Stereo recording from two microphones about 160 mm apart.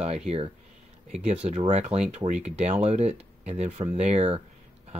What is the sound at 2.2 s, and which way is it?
Speech, 25° right (ahead or behind).